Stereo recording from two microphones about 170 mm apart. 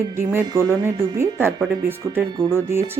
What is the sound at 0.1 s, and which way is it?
Speech, 15° right (ahead or behind).